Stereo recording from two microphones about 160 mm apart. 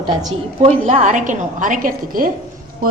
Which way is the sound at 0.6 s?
40° right (ahead or behind).